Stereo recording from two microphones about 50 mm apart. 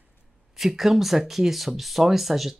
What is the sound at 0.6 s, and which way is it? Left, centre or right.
Speech, centre.